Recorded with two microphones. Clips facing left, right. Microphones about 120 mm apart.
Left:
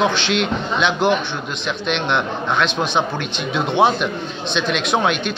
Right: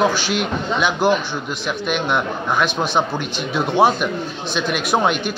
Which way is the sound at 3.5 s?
20° left (ahead or behind).